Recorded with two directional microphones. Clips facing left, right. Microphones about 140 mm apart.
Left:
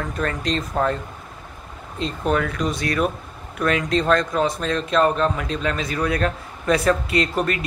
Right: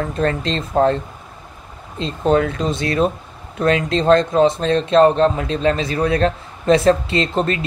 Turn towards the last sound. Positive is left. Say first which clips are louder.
# right 2 dB
turn(degrees=-25)  # may be behind; listen again after turning